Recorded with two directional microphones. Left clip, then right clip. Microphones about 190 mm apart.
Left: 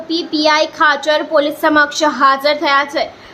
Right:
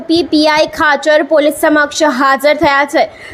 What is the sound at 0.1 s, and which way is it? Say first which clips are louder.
A woman's voice: right 4 dB; 35° right (ahead or behind).